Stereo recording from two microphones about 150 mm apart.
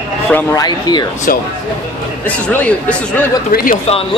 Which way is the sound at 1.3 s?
70° left (ahead or behind).